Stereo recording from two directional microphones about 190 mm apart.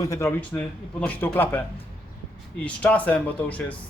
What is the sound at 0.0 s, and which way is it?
Speech, 15° left (ahead or behind).